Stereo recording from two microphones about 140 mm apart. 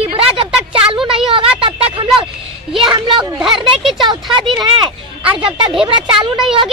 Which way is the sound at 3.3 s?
Centre (ahead or behind).